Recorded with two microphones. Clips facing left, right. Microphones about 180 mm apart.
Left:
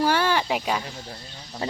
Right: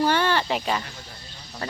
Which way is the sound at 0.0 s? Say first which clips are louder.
Even; 10° left (ahead or behind).